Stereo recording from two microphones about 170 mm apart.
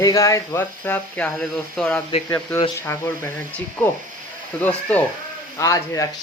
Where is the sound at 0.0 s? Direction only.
20° left (ahead or behind).